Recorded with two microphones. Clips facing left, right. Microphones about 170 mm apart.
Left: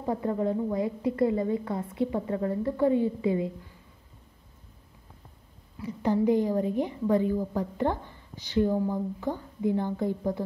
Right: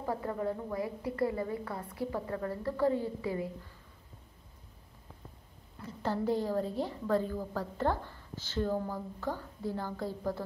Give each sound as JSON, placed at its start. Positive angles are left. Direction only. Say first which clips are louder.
{"t": 0.0, "sound": "a woman's voice", "louder": "left 6 dB", "side_deg": 25}
{"t": 5.8, "sound": "a woman's voice", "louder": "left 8 dB", "side_deg": 10}